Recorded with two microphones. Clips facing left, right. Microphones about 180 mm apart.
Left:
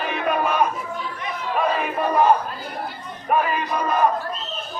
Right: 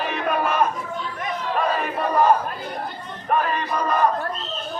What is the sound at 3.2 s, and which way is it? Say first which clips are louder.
Speech: left 1 dB; 10° left (ahead or behind).